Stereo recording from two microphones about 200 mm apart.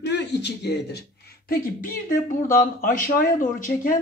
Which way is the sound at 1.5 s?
45° left (ahead or behind).